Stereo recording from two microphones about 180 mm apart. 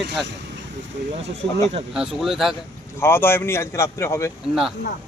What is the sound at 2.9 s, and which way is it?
Speech, 15° left (ahead or behind).